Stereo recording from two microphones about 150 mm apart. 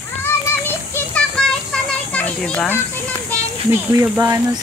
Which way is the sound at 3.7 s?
20° right (ahead or behind).